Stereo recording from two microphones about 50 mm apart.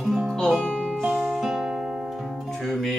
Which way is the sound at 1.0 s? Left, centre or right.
Centre.